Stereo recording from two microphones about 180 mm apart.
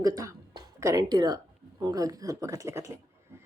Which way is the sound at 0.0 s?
20° right (ahead or behind).